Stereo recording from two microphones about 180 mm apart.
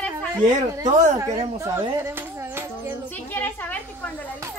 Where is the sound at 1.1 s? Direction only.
20° right (ahead or behind).